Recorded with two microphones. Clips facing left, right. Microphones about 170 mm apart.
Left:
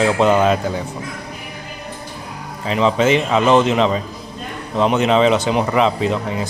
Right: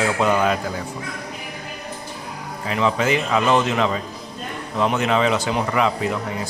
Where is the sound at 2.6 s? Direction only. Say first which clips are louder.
Left 5 dB; 20° left (ahead or behind).